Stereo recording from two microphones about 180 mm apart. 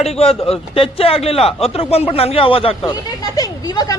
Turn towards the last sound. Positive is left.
turn(degrees=20)  # may be behind; listen again after turning